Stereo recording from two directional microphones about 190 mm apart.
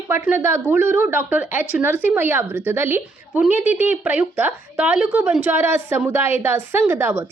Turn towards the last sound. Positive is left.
turn(degrees=-10)  # may be behind; listen again after turning